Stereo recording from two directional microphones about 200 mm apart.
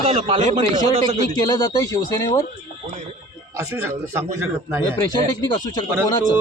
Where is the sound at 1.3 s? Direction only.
20° left (ahead or behind).